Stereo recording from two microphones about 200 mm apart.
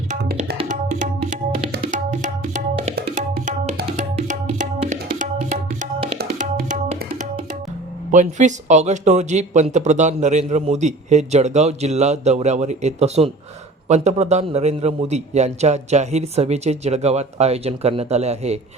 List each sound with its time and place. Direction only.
0.1 s tabla: 45° right (ahead or behind)
3.8 s music: 40° right (ahead or behind)
6.1 s music: 45° right (ahead or behind)
8.1 s speech: 40° right (ahead or behind)